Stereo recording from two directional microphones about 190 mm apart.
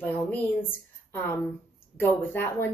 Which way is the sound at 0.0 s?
10° left (ahead or behind).